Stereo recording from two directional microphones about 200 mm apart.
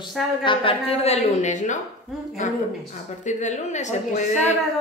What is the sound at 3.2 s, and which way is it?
A woman's voice, 35° left (ahead or behind).